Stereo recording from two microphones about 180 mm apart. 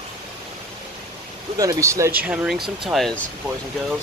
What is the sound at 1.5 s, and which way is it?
Speech, 20° right (ahead or behind).